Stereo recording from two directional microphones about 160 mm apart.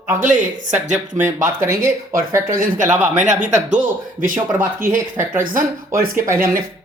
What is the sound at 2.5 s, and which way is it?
Speech, 55° right (ahead or behind).